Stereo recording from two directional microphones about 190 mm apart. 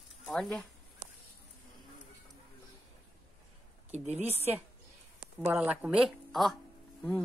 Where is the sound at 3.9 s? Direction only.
35° right (ahead or behind).